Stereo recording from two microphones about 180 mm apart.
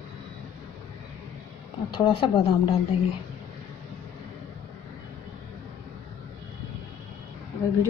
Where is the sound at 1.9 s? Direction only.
30° left (ahead or behind).